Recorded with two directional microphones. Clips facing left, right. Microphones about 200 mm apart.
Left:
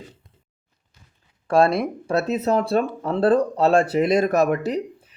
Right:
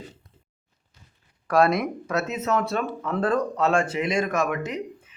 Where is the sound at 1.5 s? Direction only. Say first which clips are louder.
Left 2 dB; 30° left (ahead or behind).